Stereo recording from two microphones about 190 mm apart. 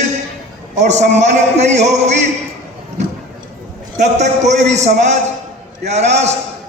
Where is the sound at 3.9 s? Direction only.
40° right (ahead or behind).